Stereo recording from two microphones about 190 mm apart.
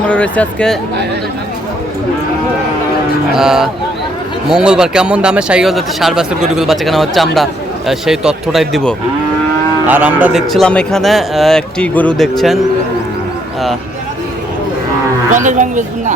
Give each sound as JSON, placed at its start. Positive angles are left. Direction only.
{"t": 0.1, "sound": "speech", "side_deg": 10}
{"t": 3.3, "sound": "speech", "side_deg": 0}
{"t": 9.8, "sound": "speech", "side_deg": -10}
{"t": 15.4, "sound": "speech", "side_deg": -40}